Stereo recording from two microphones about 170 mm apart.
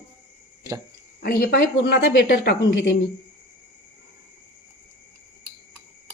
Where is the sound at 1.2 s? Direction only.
65° left (ahead or behind).